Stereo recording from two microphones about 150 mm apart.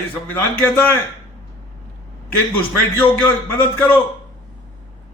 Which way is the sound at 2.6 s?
10° left (ahead or behind).